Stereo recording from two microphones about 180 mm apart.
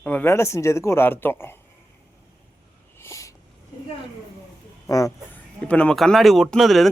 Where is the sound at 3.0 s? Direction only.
15° left (ahead or behind).